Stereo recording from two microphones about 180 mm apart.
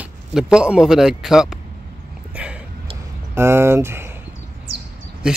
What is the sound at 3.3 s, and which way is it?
Speech, 15° right (ahead or behind).